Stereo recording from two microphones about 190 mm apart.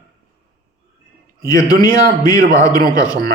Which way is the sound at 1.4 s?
20° left (ahead or behind).